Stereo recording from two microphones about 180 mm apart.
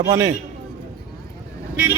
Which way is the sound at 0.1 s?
20° right (ahead or behind).